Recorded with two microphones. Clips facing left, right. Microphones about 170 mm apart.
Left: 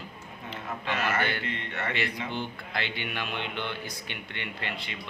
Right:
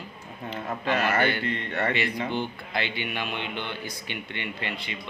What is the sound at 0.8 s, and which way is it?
A man's voice, 35° right (ahead or behind).